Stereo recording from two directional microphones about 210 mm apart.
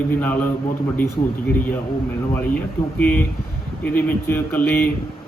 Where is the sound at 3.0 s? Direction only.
5° left (ahead or behind).